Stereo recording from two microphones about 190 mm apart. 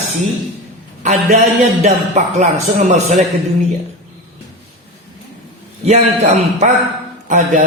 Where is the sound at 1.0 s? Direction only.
35° right (ahead or behind).